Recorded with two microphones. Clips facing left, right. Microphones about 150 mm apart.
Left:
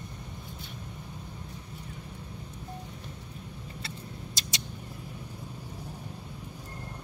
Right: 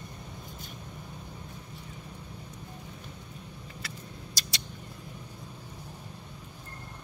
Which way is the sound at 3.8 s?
25° left (ahead or behind).